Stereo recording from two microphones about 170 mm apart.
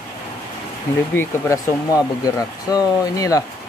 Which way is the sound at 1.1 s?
15° left (ahead or behind).